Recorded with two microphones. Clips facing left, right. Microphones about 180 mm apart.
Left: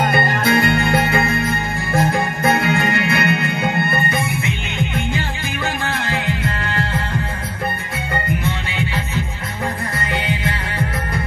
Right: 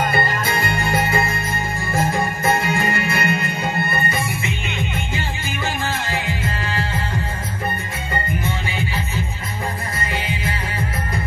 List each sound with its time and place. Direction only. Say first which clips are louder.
0.0 s music: left 3 dB; 60° left (ahead or behind)
6.0 s music: left 3 dB; 65° left (ahead or behind)
10.1 s music: left 4 dB; 65° left (ahead or behind)